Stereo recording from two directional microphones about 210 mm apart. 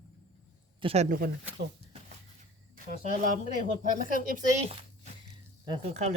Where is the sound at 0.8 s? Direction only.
30° right (ahead or behind).